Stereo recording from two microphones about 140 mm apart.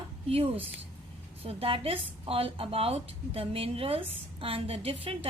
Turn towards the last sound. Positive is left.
turn(degrees=-45)  # may be behind; listen again after turning